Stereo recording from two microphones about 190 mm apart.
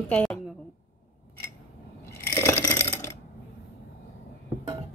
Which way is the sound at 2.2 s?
15° left (ahead or behind).